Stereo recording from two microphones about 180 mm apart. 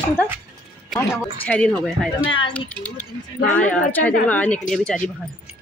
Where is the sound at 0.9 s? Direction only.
Centre (ahead or behind).